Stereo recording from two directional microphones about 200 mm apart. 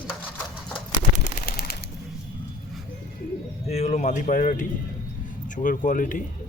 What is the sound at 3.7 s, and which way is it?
Speech, 35° left (ahead or behind).